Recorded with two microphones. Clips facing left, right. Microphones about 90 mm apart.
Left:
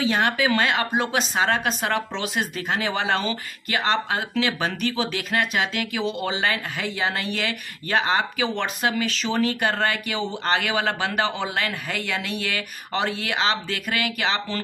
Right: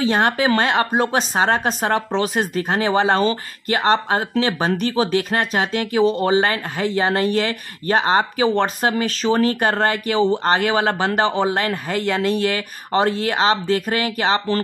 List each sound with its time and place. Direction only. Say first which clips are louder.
0.0 s speech: right 4 dB; 40° right (ahead or behind)